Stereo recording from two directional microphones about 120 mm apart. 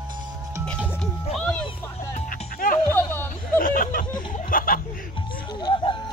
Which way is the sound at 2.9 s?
15° left (ahead or behind).